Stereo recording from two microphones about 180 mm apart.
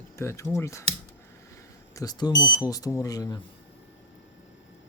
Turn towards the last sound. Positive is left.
turn(degrees=20)  # may be behind; listen again after turning